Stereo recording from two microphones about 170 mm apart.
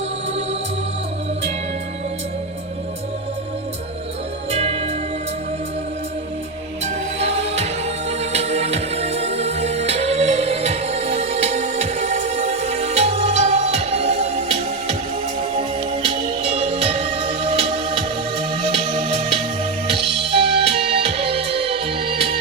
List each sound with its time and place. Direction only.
4.5 s music: 35° right (ahead or behind)
6.8 s music: 40° right (ahead or behind)